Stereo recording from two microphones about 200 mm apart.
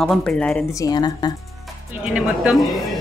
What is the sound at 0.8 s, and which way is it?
Speech, 20° left (ahead or behind).